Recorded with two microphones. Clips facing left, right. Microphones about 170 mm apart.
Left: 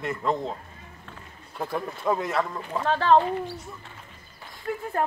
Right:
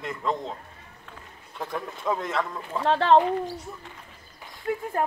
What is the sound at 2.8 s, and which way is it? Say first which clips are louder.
Speech: right 1 dB; 25° right (ahead or behind).